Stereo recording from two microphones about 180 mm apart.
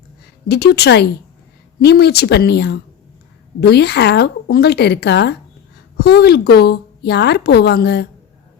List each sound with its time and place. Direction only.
0.4 s a woman's voice: 65° left (ahead or behind)